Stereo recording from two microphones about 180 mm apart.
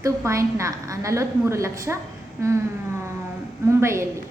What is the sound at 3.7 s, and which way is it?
Speech, 15° right (ahead or behind).